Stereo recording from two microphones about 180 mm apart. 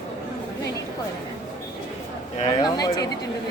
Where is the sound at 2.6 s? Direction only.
20° left (ahead or behind).